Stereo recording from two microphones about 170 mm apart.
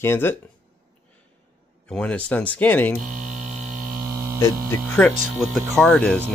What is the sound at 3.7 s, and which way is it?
Mains hum, 55° right (ahead or behind).